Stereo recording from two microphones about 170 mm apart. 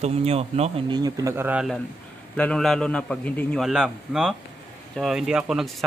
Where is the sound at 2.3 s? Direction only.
5° left (ahead or behind).